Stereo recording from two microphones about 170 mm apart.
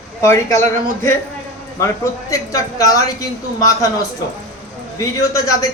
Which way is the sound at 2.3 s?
20° left (ahead or behind).